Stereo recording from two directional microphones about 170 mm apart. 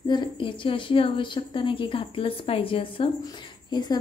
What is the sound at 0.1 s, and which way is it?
A woman's voice, 30° left (ahead or behind).